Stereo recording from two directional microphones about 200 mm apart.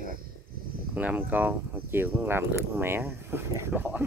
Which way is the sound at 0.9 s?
10° right (ahead or behind).